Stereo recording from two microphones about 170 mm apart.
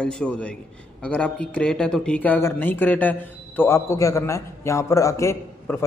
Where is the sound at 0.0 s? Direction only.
5° left (ahead or behind).